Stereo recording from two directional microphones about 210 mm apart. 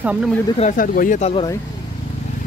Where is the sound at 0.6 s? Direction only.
40° left (ahead or behind).